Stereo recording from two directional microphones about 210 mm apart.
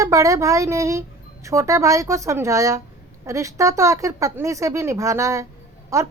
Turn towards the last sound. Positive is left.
turn(degrees=-15)  # may be behind; listen again after turning